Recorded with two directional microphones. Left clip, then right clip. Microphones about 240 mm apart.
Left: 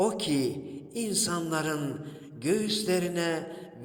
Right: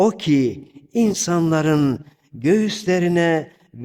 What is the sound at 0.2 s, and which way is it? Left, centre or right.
Speech, right.